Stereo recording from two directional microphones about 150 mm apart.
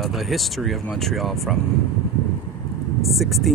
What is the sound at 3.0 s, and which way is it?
Speech, centre (ahead or behind).